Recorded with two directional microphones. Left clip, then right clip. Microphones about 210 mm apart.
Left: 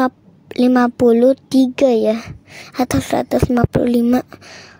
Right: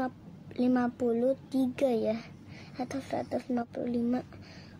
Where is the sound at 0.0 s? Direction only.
50° left (ahead or behind).